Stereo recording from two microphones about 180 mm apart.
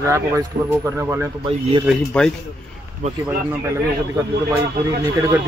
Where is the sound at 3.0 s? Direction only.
40° right (ahead or behind).